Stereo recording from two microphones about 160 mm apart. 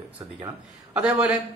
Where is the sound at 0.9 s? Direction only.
5° right (ahead or behind).